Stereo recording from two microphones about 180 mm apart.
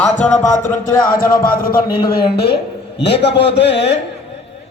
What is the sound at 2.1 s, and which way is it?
A man's voice, 65° left (ahead or behind).